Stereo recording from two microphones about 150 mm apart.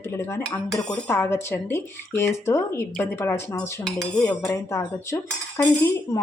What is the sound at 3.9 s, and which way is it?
Speech, 5° left (ahead or behind).